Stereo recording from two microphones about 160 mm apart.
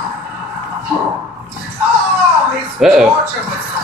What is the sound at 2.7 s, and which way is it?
Speech, 5° right (ahead or behind).